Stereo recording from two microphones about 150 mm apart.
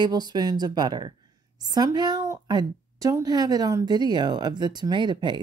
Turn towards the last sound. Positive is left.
turn(degrees=-30)  # may be behind; listen again after turning